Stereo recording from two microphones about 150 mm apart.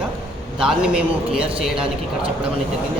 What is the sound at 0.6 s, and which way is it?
A man's voice, 5° right (ahead or behind).